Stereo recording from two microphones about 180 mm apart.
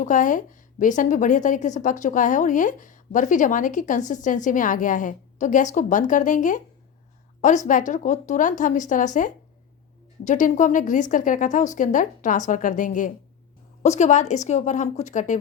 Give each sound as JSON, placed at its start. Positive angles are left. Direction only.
{"t": 0.0, "sound": "a woman's voice", "side_deg": 45}